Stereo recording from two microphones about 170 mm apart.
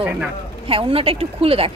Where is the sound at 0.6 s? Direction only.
35° right (ahead or behind).